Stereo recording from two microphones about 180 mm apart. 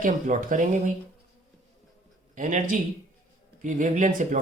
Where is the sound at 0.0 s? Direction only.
45° right (ahead or behind).